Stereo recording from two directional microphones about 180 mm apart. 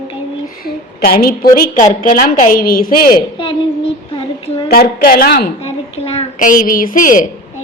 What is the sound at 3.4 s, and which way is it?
Child singing, 30° left (ahead or behind).